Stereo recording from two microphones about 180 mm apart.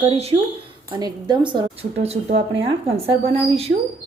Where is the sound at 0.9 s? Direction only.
25° right (ahead or behind).